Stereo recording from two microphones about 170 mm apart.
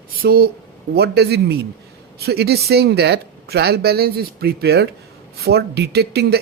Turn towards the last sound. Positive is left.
turn(degrees=-70)  # may be behind; listen again after turning